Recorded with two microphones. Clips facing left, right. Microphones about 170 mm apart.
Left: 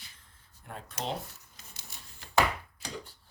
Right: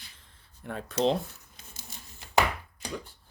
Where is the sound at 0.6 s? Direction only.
75° right (ahead or behind).